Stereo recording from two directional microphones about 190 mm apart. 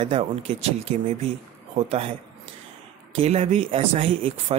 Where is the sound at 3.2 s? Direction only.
35° right (ahead or behind).